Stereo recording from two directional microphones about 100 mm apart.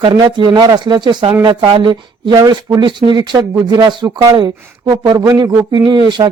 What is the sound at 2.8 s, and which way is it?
Speech, 50° right (ahead or behind).